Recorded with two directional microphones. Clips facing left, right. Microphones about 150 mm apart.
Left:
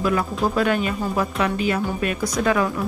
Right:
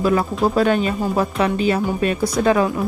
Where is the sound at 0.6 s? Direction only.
30° right (ahead or behind).